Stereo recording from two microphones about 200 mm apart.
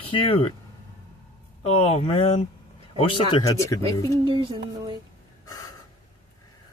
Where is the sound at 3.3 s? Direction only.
15° left (ahead or behind).